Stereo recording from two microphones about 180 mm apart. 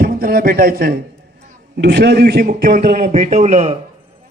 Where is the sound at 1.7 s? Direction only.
65° right (ahead or behind); by 3.8 s 40° right (ahead or behind).